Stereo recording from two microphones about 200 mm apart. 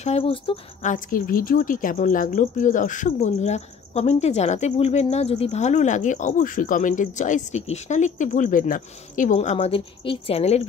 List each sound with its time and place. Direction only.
0.0 s speech: 30° left (ahead or behind)
0.9 s speech: 45° left (ahead or behind)